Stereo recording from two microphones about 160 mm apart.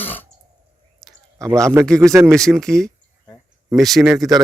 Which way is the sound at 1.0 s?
Centre (ahead or behind).